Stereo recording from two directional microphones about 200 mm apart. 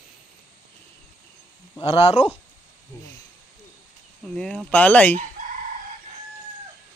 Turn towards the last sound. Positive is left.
turn(degrees=10)  # may be behind; listen again after turning